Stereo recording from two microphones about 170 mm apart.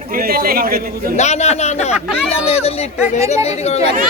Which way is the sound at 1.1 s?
40° left (ahead or behind).